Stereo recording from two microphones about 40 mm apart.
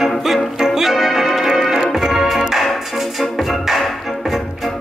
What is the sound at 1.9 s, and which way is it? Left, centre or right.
Organ, centre.